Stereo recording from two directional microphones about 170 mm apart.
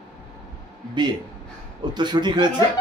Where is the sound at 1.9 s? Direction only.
25° right (ahead or behind).